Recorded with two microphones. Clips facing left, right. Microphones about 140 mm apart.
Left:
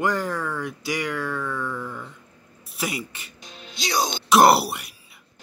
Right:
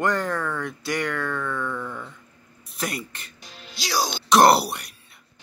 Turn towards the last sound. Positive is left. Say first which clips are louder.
# even
turn(degrees=0)  # may be behind; listen again after turning